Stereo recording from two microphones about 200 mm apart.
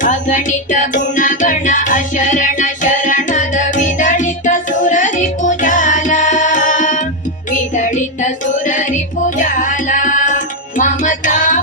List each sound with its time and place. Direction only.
0.0 s music: 40° left (ahead or behind)